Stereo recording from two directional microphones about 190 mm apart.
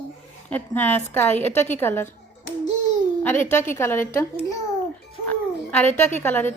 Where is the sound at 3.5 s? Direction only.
10° left (ahead or behind).